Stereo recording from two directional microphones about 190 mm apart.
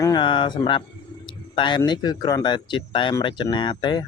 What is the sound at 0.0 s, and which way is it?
Speech, 25° left (ahead or behind).